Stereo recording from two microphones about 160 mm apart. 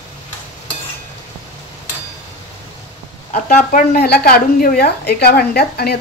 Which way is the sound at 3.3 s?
60° left (ahead or behind).